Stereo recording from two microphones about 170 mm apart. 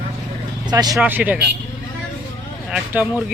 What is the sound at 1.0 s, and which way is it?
Speech, 10° right (ahead or behind).